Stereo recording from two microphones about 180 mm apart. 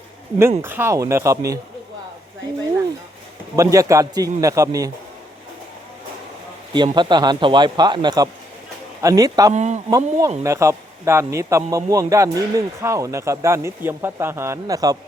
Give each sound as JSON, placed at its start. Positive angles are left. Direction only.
{"t": 0.6, "sound": "a man's voice", "side_deg": -10}
{"t": 3.5, "sound": "a man's voice", "side_deg": -20}
{"t": 6.7, "sound": "speech", "side_deg": -25}
{"t": 9.5, "sound": "speech", "side_deg": -40}
{"t": 9.9, "sound": "a man's voice", "side_deg": -15}